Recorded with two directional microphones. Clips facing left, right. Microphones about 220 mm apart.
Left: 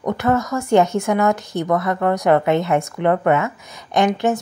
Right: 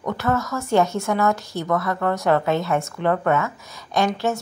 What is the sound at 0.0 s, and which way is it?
Speech, 15° left (ahead or behind).